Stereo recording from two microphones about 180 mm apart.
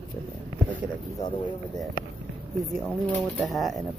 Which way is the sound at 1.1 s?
20° left (ahead or behind).